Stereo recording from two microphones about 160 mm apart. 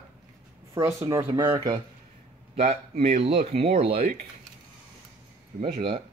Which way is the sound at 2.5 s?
45° right (ahead or behind).